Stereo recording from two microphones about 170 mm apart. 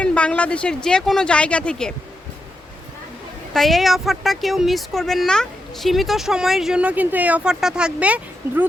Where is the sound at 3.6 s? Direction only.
Centre (ahead or behind).